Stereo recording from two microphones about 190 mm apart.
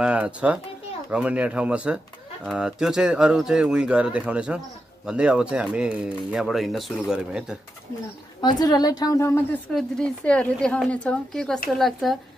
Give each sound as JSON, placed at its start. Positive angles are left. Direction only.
{"t": 0.0, "sound": "speech", "side_deg": -5}
{"t": 8.4, "sound": "a woman's voice", "side_deg": 20}